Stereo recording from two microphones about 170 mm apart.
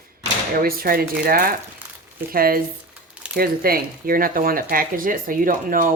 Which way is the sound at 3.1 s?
5° right (ahead or behind).